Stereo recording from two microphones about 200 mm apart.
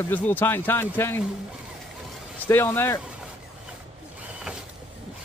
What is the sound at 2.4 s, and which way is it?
Speech, 10° left (ahead or behind).